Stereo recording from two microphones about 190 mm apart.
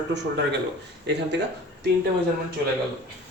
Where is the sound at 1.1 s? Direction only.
65° right (ahead or behind).